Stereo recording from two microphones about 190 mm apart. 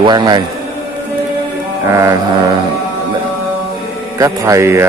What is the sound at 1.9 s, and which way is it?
Speech, 15° right (ahead or behind).